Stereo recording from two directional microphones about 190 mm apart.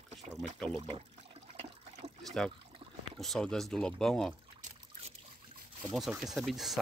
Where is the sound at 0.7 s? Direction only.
30° right (ahead or behind).